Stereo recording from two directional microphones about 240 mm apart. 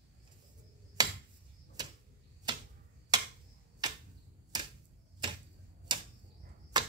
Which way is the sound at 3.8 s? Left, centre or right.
Centre.